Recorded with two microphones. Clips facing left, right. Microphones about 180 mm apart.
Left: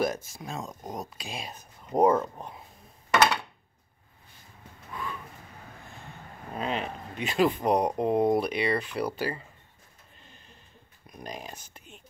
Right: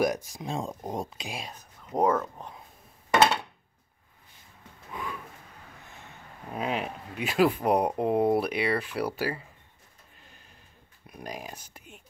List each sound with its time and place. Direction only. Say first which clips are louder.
0.0 s speech: right 2 dB; 15° right (ahead or behind)
0.5 s speech: right 4 dB; 30° right (ahead or behind)
1.5 s speech: left 3 dB; 10° left (ahead or behind)
4.9 s a sound: even; 20° right (ahead or behind)
6.5 s speech: right 1 dB; 5° right (ahead or behind)
11.1 s speech: right 1 dB; 10° right (ahead or behind)